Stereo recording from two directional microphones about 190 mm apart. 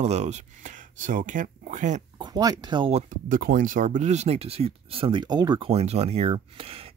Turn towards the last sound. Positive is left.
turn(degrees=-30)  # may be behind; listen again after turning